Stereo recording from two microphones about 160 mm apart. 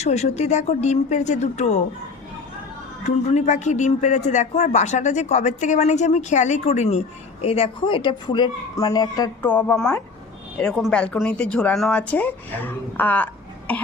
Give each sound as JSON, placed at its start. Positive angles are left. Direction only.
{"t": 0.0, "sound": "a man's voice", "side_deg": 40}
{"t": 3.2, "sound": "a man's voice", "side_deg": 50}
{"t": 9.4, "sound": "speech", "side_deg": 10}